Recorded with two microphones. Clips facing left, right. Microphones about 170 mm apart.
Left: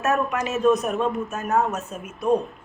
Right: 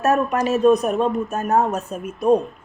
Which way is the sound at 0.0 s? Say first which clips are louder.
Right 4 dB; 35° right (ahead or behind).